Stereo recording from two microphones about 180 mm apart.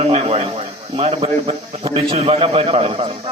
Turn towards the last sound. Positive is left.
turn(degrees=-30)  # may be behind; listen again after turning